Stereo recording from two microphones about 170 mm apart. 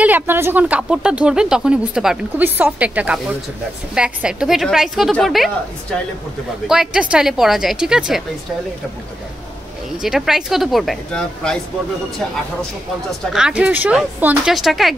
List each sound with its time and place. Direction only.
0.0 s speech: 10° right (ahead or behind)
6.7 s speech: 5° right (ahead or behind)
10.0 s speech: centre (ahead or behind)
13.2 s speech: 5° right (ahead or behind)